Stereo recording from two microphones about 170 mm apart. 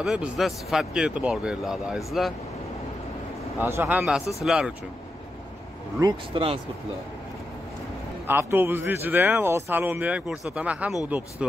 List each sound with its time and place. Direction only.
0.0 s a man's voice: 5° right (ahead or behind)
3.5 s a man's voice: 10° right (ahead or behind)
5.9 s speech: 30° right (ahead or behind)
8.3 s speech: 15° right (ahead or behind)